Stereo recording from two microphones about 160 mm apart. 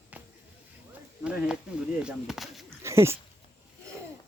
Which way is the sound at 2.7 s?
15° right (ahead or behind).